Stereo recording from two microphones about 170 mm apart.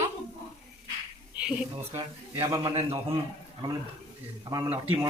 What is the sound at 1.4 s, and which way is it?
Speech, 5° right (ahead or behind).